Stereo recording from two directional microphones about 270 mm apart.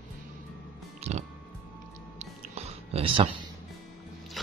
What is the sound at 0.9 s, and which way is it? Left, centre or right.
Music, right.